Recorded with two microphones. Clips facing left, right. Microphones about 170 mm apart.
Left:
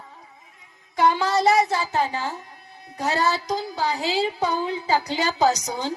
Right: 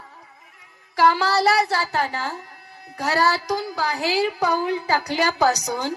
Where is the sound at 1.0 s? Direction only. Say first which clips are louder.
Right 1 dB; 20° left (ahead or behind).